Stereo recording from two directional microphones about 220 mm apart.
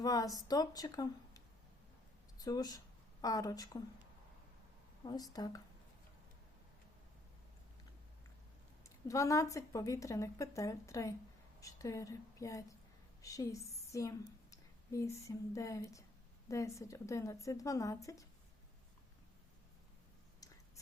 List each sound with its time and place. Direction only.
0.0 s a woman's voice: 15° left (ahead or behind)
2.4 s speech: 15° left (ahead or behind)
5.0 s a woman's voice: 15° left (ahead or behind)
9.0 s a woman's voice: 15° left (ahead or behind)